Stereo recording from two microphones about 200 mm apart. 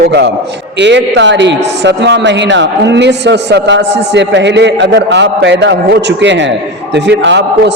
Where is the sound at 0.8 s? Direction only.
60° right (ahead or behind).